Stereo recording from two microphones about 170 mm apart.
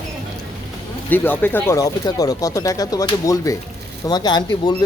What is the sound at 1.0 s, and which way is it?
Speech, 10° left (ahead or behind).